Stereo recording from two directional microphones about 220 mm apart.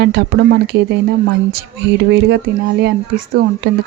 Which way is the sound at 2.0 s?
50° right (ahead or behind).